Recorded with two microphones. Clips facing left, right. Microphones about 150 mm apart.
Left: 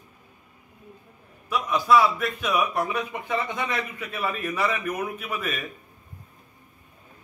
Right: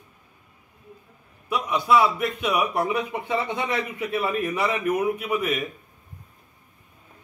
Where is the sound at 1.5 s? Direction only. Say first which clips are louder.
Even; 20° right (ahead or behind).